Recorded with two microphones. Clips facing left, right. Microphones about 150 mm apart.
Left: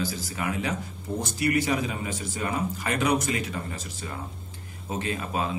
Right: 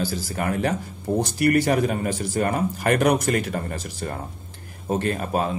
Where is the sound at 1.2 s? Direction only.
60° right (ahead or behind).